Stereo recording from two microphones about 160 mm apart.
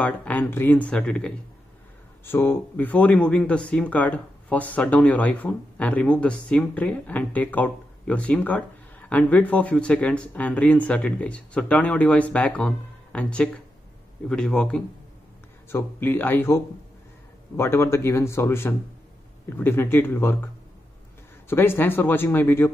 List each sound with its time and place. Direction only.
0.0 s a man's voice: 10° left (ahead or behind)
21.5 s speech: 15° left (ahead or behind)